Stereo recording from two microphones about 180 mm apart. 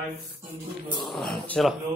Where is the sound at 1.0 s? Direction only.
Centre (ahead or behind).